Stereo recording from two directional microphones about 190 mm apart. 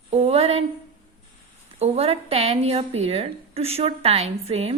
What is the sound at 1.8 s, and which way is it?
A woman's voice, 30° right (ahead or behind).